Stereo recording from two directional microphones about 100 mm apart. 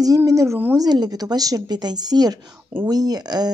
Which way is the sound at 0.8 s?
40° right (ahead or behind).